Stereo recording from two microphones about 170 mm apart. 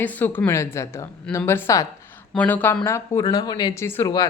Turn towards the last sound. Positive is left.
turn(degrees=15)  # may be behind; listen again after turning